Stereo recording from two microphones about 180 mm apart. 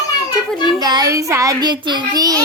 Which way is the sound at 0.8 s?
20° right (ahead or behind).